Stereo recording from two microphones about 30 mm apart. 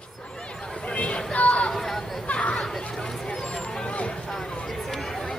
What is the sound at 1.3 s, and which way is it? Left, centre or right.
Chatter, left.